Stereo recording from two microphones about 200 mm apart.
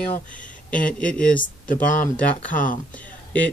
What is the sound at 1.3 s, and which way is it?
Speech, 40° left (ahead or behind).